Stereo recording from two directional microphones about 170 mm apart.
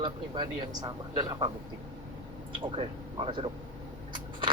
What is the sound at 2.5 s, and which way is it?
Speech, 30° right (ahead or behind).